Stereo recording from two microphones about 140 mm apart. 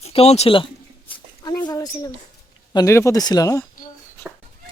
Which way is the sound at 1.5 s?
25° left (ahead or behind).